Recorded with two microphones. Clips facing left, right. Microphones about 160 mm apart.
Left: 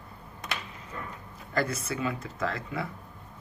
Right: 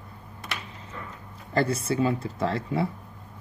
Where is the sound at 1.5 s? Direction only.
30° right (ahead or behind).